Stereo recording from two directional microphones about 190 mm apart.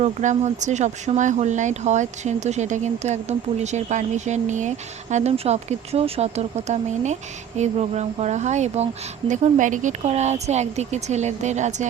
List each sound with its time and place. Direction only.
0.0 s speech: 40° right (ahead or behind)